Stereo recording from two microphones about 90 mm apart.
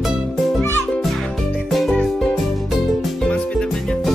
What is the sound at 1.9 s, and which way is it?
Music, 5° left (ahead or behind).